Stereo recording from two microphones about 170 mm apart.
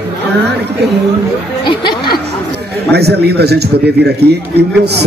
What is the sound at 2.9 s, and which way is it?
Speech, 75° right (ahead or behind).